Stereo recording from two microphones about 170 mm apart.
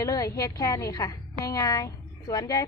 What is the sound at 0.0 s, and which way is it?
A woman's voice, 20° left (ahead or behind).